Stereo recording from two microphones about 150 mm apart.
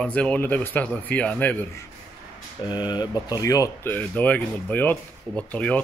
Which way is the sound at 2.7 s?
30° left (ahead or behind).